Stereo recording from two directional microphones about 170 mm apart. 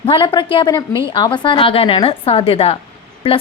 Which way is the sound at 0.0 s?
30° left (ahead or behind).